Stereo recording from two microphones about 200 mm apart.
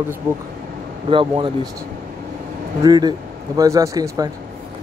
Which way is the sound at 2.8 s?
20° right (ahead or behind).